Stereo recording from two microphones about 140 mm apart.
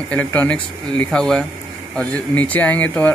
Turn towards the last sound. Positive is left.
turn(degrees=10)  # may be behind; listen again after turning